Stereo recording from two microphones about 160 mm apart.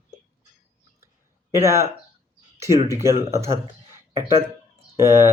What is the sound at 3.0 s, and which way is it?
Speech, 20° right (ahead or behind).